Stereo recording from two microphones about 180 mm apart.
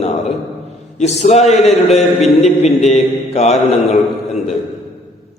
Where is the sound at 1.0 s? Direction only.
40° left (ahead or behind).